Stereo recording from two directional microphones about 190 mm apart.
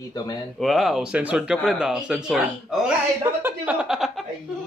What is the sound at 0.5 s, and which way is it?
Speech, centre (ahead or behind).